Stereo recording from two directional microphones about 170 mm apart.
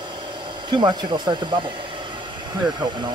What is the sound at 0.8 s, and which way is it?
Speech, 25° right (ahead or behind).